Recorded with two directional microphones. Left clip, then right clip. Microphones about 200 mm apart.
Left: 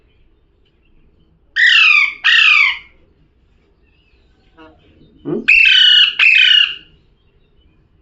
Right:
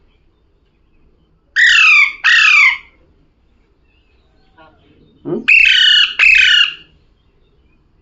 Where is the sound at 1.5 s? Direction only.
25° right (ahead or behind).